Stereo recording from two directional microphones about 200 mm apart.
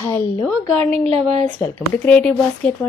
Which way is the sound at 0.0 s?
10° left (ahead or behind).